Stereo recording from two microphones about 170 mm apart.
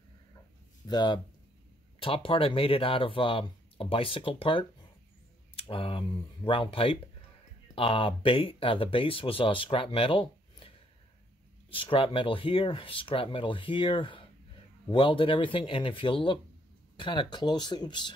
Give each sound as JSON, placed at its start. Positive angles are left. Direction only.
{"t": 0.8, "sound": "speech", "side_deg": 25}
{"t": 11.7, "sound": "speech", "side_deg": 30}